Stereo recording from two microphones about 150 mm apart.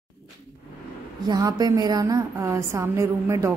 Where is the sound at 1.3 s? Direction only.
25° right (ahead or behind).